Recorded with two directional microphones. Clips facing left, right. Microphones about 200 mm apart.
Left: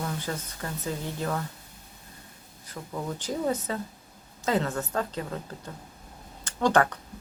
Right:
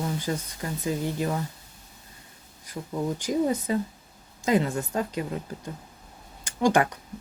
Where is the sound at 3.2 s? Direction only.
15° right (ahead or behind).